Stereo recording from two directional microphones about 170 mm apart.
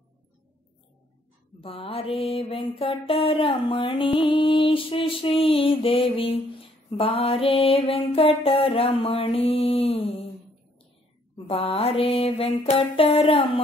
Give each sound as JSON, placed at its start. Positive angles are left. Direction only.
{"t": 1.6, "sound": "mantra", "side_deg": 35}
{"t": 11.3, "sound": "mantra", "side_deg": 35}